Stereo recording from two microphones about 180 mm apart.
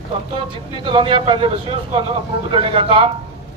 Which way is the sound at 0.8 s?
25° right (ahead or behind).